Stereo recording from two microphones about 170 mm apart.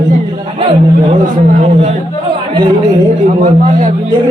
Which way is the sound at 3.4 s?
45° right (ahead or behind).